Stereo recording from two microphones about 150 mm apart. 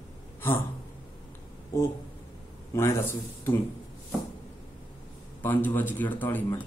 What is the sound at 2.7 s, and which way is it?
Speech, 15° left (ahead or behind).